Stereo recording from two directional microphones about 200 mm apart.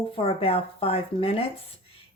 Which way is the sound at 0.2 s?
30° left (ahead or behind).